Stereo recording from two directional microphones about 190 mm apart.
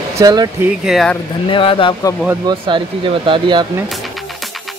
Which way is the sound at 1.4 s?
25° left (ahead or behind).